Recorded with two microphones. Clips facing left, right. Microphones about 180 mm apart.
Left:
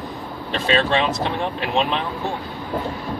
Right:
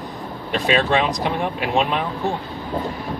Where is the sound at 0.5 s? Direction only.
15° right (ahead or behind).